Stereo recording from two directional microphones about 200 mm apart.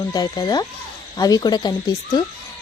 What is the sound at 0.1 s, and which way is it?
A woman's voice, 20° left (ahead or behind).